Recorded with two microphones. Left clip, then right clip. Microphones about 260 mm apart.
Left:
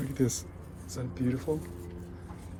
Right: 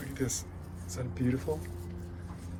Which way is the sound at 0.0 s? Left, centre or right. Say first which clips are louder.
Left 5 dB; centre.